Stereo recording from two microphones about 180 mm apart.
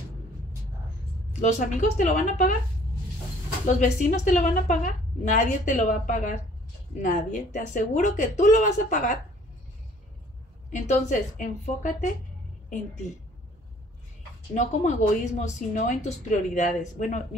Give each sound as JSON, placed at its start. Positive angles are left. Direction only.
{"t": 1.3, "sound": "a woman's voice", "side_deg": 40}
{"t": 3.6, "sound": "a woman's voice", "side_deg": 40}
{"t": 10.7, "sound": "a woman's voice", "side_deg": 45}
{"t": 14.5, "sound": "a woman's voice", "side_deg": 40}